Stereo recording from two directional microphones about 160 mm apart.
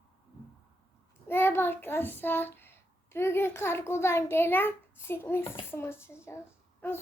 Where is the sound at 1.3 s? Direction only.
15° left (ahead or behind).